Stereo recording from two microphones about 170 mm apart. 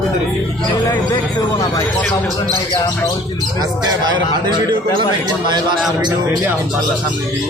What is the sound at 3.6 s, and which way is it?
A man's voice, 25° right (ahead or behind).